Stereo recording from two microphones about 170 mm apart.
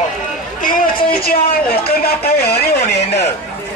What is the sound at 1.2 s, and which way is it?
A woman's voice, 65° left (ahead or behind).